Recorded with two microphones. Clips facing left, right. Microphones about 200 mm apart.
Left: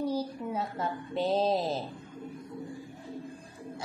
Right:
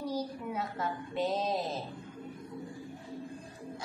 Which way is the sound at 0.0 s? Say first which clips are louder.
Left 4 dB; 30° left (ahead or behind).